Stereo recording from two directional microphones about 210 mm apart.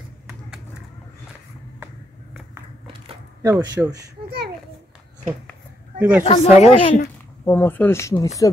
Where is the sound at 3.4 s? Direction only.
15° right (ahead or behind).